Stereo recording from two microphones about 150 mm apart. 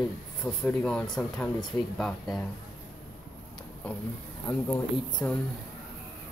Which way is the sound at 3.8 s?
10° left (ahead or behind).